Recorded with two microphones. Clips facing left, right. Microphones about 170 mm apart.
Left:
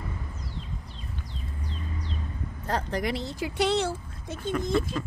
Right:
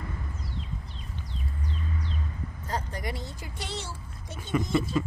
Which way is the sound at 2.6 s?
70° left (ahead or behind).